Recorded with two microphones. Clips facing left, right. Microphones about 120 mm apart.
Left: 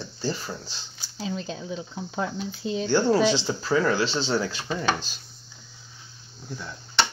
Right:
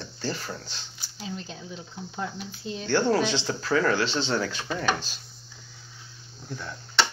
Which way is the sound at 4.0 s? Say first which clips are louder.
Left 1 dB; 35° left (ahead or behind).